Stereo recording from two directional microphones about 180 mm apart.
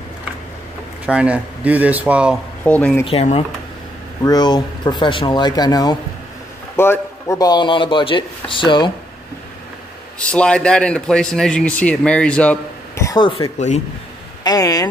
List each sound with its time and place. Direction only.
1.0 s speech: 5° right (ahead or behind)
2.6 s speech: 10° left (ahead or behind)
3.1 s speech: 35° left (ahead or behind)
4.2 s speech: 20° left (ahead or behind)
10.1 s a man's voice: 5° left (ahead or behind)